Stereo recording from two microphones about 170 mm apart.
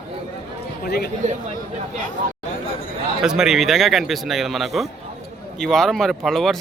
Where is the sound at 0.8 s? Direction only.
65° left (ahead or behind).